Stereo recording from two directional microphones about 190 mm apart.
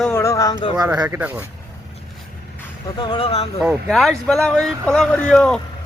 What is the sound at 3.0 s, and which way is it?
Speech, 30° left (ahead or behind).